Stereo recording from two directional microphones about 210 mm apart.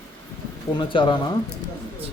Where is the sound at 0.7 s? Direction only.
20° left (ahead or behind).